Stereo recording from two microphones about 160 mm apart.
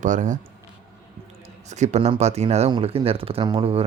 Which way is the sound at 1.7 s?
45° right (ahead or behind).